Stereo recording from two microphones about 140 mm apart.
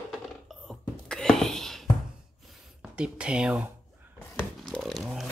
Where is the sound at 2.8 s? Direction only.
10° right (ahead or behind).